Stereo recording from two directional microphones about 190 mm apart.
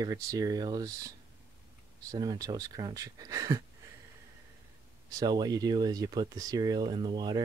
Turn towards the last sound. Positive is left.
turn(degrees=-20)  # may be behind; listen again after turning